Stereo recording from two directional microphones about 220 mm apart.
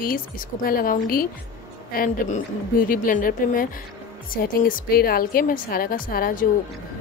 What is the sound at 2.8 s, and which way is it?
Speech, 40° left (ahead or behind).